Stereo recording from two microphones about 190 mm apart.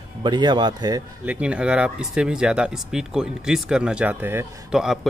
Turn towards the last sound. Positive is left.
turn(degrees=-5)  # may be behind; listen again after turning